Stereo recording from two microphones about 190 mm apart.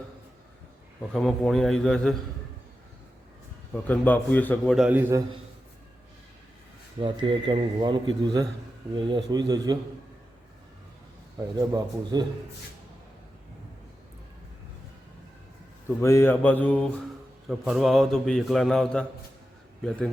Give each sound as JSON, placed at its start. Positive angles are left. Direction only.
{"t": 1.1, "sound": "a man's voice", "side_deg": 0}
{"t": 3.8, "sound": "a man's voice", "side_deg": 10}
{"t": 7.0, "sound": "a man's voice", "side_deg": -25}
{"t": 11.5, "sound": "speech", "side_deg": -15}
{"t": 16.0, "sound": "mantra", "side_deg": 15}
{"t": 17.5, "sound": "a man's voice", "side_deg": 0}